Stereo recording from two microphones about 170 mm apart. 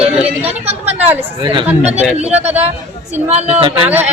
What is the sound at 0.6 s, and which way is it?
Speech, 35° right (ahead or behind).